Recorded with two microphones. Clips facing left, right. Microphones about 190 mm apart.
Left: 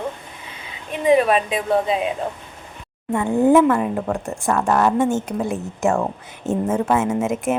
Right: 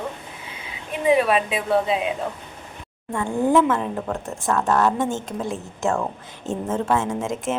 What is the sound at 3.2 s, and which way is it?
Speech, 15° left (ahead or behind).